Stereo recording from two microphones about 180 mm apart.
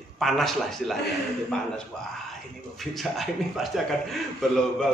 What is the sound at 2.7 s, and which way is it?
A man's voice, centre (ahead or behind).